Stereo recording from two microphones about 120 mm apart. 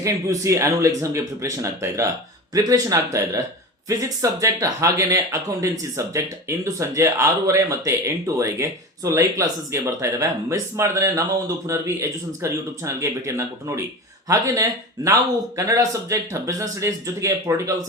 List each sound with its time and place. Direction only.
0.0 s speech: 25° right (ahead or behind)